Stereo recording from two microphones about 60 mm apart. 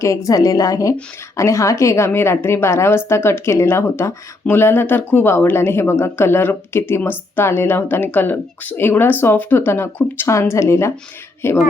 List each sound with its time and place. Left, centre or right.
0.0 s a woman's voice: left
1.4 s a woman's voice: left
10.5 s a woman's voice: left